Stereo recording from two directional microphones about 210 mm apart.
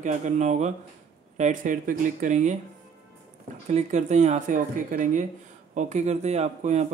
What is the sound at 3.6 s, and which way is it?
Speech, 35° right (ahead or behind).